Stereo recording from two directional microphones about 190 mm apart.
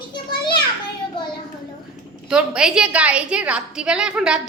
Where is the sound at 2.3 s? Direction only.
5° right (ahead or behind).